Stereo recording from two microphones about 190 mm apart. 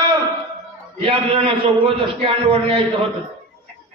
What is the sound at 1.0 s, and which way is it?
A man's voice, 30° right (ahead or behind).